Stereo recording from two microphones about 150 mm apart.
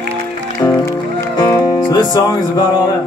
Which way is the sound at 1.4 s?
25° left (ahead or behind).